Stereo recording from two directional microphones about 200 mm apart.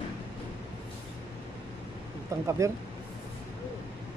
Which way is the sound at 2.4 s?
15° right (ahead or behind).